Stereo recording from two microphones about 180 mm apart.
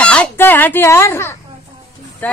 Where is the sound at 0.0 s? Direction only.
5° left (ahead or behind).